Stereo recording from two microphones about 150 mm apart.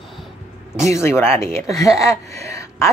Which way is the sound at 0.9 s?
15° left (ahead or behind).